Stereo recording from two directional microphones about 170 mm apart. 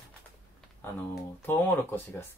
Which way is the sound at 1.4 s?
10° left (ahead or behind).